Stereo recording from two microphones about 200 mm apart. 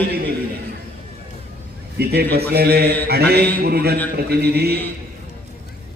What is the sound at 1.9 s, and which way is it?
A man's voice, 55° right (ahead or behind).